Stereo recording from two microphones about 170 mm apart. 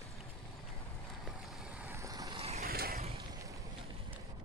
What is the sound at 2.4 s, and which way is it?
Vehicle, 40° right (ahead or behind).